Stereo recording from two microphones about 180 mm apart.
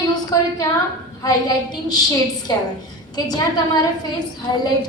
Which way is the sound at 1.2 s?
20° left (ahead or behind).